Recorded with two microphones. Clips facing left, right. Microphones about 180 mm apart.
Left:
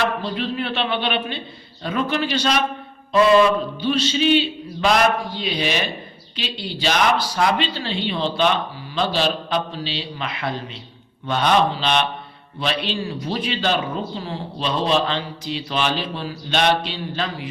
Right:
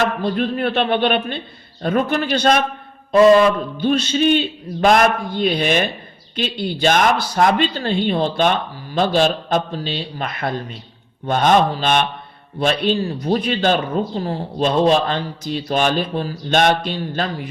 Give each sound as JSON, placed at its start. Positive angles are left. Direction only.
{"t": 0.0, "sound": "speech", "side_deg": -50}